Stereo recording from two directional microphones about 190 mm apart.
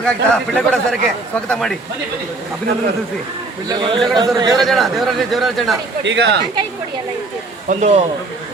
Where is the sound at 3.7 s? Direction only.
25° right (ahead or behind).